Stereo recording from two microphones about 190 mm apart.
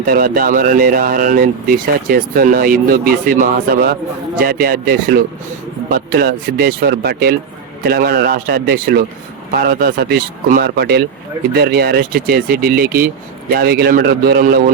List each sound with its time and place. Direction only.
0.0 s a man's voice: 50° right (ahead or behind)